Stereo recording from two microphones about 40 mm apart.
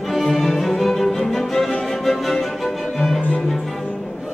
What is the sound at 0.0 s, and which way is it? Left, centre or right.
Music, centre.